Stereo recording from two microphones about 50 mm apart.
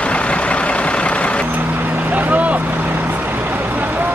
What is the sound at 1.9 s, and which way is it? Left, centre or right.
Vehicle, right.